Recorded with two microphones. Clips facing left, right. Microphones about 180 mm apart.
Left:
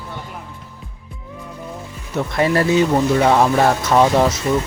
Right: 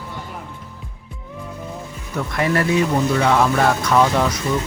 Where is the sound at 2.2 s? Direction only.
25° left (ahead or behind).